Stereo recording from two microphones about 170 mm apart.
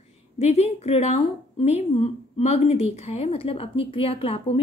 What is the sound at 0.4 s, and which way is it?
A woman's voice, 35° left (ahead or behind).